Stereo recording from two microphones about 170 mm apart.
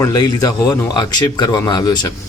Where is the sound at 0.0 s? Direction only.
20° left (ahead or behind).